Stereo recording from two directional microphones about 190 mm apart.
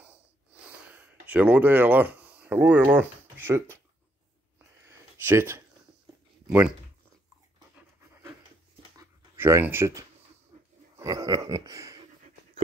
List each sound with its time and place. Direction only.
0.9 s speech: 10° right (ahead or behind)
4.8 s a sound: 15° right (ahead or behind)
6.4 s speech: 5° right (ahead or behind)
7.7 s pant: 10° right (ahead or behind)
9.4 s speech: 10° right (ahead or behind)
11.0 s a sound: 20° right (ahead or behind)